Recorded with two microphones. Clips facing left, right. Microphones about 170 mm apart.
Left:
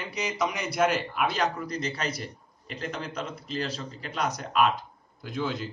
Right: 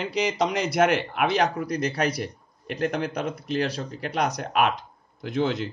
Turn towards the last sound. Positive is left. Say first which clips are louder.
# right 6 dB
turn(degrees=-70)  # may be behind; listen again after turning